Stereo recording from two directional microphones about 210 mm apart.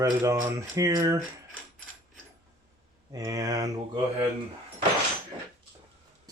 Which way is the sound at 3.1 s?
15° right (ahead or behind).